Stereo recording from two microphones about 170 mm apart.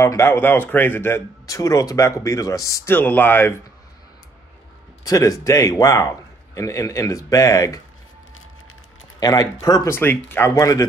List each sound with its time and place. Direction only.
0.0 s speech: 15° left (ahead or behind)
5.0 s a man's voice: 20° left (ahead or behind)
9.2 s a man's voice: 20° left (ahead or behind)